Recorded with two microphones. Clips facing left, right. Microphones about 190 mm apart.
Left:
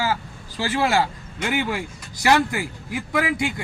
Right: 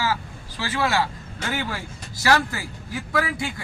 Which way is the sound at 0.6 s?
25° left (ahead or behind).